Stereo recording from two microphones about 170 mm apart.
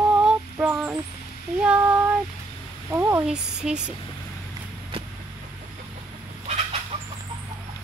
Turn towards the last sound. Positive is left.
turn(degrees=-40)  # may be behind; listen again after turning